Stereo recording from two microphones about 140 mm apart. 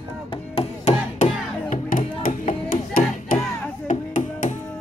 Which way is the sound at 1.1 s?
65° left (ahead or behind).